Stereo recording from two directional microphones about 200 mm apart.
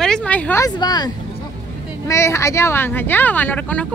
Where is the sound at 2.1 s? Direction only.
15° left (ahead or behind).